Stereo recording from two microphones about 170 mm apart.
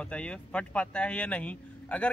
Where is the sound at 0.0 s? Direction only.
5° left (ahead or behind).